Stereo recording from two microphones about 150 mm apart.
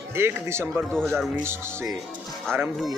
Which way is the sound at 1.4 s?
15° right (ahead or behind).